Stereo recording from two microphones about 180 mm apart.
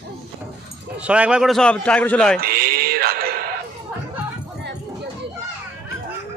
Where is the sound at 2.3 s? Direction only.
55° right (ahead or behind).